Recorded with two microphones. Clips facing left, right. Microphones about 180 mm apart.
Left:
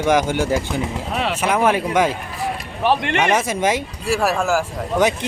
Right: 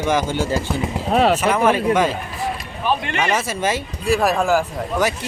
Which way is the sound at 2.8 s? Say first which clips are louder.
Left 3 dB; 70° left (ahead or behind).